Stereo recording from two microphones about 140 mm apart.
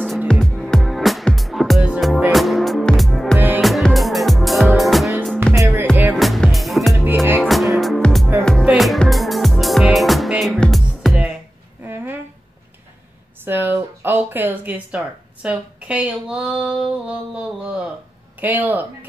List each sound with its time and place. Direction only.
0.3 s music: 5° left (ahead or behind)
3.3 s music: 15° right (ahead or behind)
3.6 s music: centre (ahead or behind)
5.5 s music: 15° right (ahead or behind)
6.1 s music: centre (ahead or behind)
11.8 s a sound: 15° right (ahead or behind)
13.4 s a sound: 15° right (ahead or behind)